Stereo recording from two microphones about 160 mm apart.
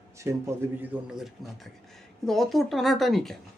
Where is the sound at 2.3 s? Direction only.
Centre (ahead or behind).